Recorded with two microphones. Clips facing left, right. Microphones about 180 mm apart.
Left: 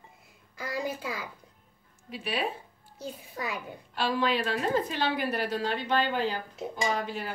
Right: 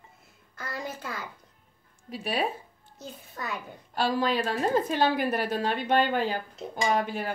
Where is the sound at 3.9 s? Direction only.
40° right (ahead or behind).